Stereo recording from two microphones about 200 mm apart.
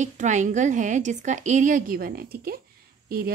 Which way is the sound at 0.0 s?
35° right (ahead or behind).